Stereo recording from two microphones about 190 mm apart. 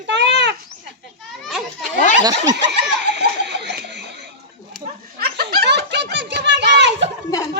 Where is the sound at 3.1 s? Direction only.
65° right (ahead or behind).